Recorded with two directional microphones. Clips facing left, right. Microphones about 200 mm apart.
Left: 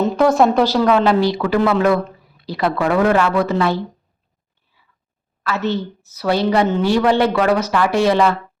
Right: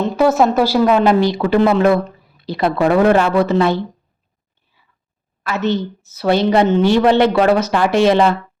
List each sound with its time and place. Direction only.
0.0 s a woman's voice: 5° right (ahead or behind); by 3.8 s 25° right (ahead or behind)
5.4 s a woman's voice: 20° right (ahead or behind)